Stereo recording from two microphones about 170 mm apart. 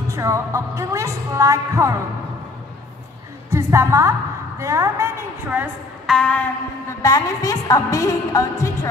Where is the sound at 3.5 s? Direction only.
15° right (ahead or behind).